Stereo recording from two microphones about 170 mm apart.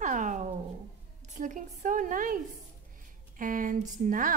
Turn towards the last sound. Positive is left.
turn(degrees=-50)  # may be behind; listen again after turning